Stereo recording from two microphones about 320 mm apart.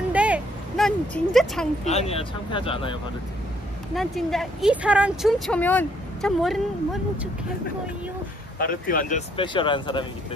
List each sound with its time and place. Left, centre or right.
0.1 s a sound: centre
1.9 s speech: centre
3.9 s speech: centre
8.5 s speech: left
9.4 s speech: centre